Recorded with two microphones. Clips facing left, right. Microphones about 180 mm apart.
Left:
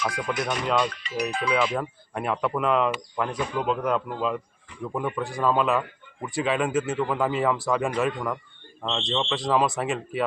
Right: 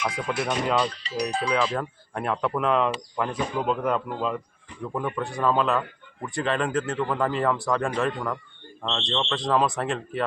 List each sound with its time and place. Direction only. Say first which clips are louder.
0.3 s speech: right 2 dB; 5° right (ahead or behind)
0.9 s speech: even; 30° right (ahead or behind)
1.5 s speech: left 1 dB; 5° left (ahead or behind)